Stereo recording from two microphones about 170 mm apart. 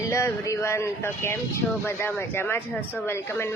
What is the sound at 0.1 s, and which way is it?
Speech, 15° left (ahead or behind).